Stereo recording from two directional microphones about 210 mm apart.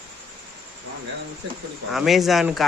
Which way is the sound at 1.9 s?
Centre (ahead or behind).